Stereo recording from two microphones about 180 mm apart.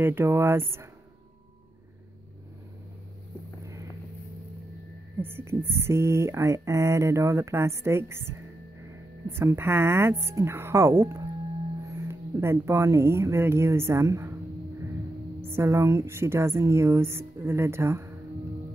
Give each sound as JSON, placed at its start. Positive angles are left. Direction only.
{"t": 0.0, "sound": "speech", "side_deg": -10}
{"t": 5.2, "sound": "speech", "side_deg": -15}
{"t": 15.5, "sound": "speech", "side_deg": -15}